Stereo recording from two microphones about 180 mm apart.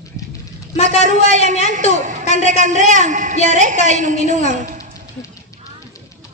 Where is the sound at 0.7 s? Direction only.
35° left (ahead or behind).